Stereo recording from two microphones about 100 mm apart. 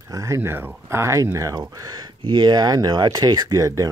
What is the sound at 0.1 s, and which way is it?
Speech, 30° right (ahead or behind).